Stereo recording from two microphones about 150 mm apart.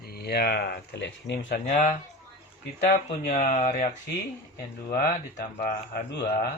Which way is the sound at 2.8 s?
50° left (ahead or behind).